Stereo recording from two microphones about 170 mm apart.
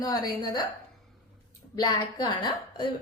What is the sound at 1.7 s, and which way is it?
Speech, 25° left (ahead or behind).